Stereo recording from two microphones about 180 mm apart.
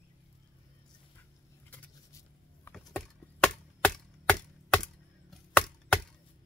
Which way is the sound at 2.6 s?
5° left (ahead or behind).